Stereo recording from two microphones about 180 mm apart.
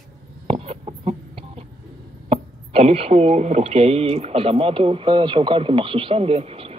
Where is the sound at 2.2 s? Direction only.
35° right (ahead or behind).